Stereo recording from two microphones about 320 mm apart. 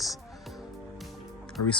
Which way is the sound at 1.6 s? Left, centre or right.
Left.